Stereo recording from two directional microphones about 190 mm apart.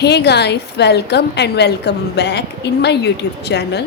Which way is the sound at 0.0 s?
60° left (ahead or behind).